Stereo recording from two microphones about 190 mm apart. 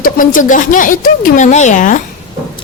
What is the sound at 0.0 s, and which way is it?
Speech, 45° left (ahead or behind).